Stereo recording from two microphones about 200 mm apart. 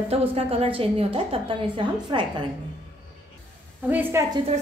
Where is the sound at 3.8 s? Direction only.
10° right (ahead or behind).